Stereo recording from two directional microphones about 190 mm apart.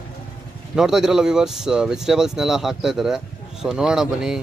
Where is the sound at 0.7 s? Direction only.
5° right (ahead or behind).